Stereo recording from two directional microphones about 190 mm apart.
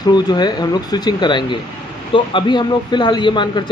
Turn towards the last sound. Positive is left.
turn(degrees=25)  # may be behind; listen again after turning